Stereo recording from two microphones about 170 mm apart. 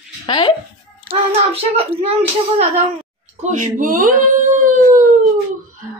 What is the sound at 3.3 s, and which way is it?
Speech, 45° right (ahead or behind).